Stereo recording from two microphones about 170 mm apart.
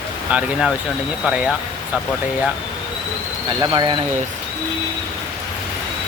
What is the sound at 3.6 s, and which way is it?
Speech, 25° right (ahead or behind).